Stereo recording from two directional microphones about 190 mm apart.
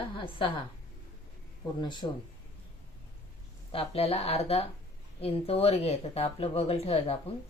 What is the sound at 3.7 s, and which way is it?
Speech, 30° left (ahead or behind).